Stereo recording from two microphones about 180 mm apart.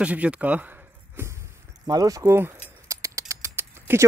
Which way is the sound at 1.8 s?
20° right (ahead or behind).